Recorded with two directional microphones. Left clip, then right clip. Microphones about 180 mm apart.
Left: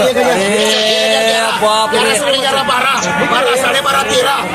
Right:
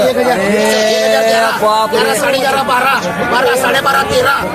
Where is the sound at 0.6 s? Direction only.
55° left (ahead or behind).